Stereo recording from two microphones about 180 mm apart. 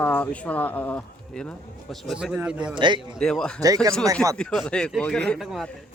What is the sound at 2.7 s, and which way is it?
Speech, 25° right (ahead or behind).